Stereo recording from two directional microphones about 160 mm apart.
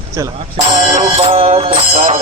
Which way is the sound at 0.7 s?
50° right (ahead or behind).